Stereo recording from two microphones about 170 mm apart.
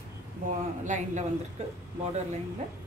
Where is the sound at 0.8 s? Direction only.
45° right (ahead or behind).